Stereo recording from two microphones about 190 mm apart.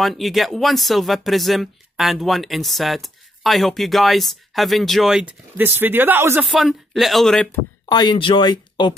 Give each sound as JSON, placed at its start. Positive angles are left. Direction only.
{"t": 0.0, "sound": "speech", "side_deg": 0}
{"t": 6.4, "sound": "speech", "side_deg": 0}
{"t": 7.9, "sound": "speech", "side_deg": 20}